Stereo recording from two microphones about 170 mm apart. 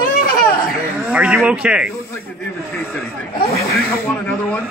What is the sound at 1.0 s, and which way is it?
Speech, 5° right (ahead or behind).